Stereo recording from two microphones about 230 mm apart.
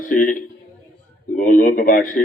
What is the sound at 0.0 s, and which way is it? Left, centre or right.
A man's voice, left.